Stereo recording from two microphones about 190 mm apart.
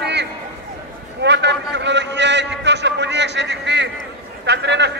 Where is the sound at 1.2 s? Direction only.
65° right (ahead or behind).